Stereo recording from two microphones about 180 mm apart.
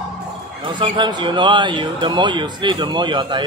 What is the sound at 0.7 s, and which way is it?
Speech, 25° right (ahead or behind).